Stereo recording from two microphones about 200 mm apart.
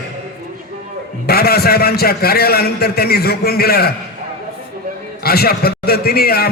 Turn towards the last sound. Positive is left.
turn(degrees=50)  # may be behind; listen again after turning